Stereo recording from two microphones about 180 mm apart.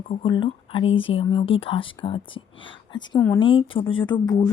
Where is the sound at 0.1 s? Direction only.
30° left (ahead or behind).